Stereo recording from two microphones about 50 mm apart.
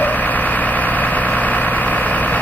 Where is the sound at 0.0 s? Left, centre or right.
Left.